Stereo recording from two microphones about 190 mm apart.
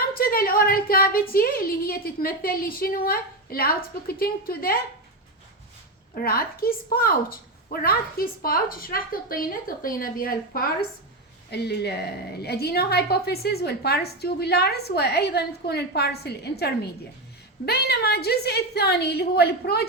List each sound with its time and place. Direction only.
0.1 s a woman's voice: 50° left (ahead or behind)
6.1 s a woman's voice: 50° left (ahead or behind)